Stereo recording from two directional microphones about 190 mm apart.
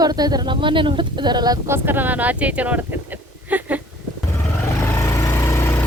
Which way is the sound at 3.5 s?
10° right (ahead or behind).